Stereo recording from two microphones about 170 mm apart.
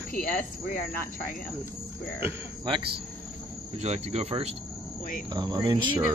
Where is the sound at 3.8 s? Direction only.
40° right (ahead or behind).